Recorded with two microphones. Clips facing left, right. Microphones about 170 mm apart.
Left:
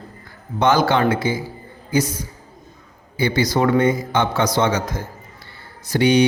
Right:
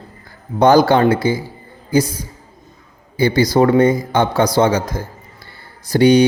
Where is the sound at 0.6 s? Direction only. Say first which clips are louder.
Right 5 dB; 40° right (ahead or behind).